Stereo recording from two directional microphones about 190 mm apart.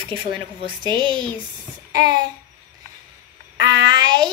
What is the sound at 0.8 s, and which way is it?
Speech, 25° right (ahead or behind).